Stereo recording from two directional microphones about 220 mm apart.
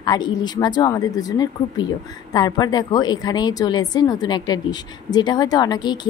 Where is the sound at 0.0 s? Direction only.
20° left (ahead or behind).